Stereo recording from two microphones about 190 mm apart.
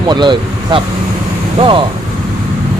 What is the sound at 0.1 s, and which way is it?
Speech, 25° right (ahead or behind).